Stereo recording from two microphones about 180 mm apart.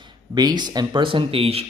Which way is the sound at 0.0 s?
25° right (ahead or behind).